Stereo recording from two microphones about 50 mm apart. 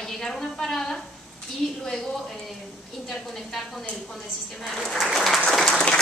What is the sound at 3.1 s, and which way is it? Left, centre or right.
A woman's voice, centre.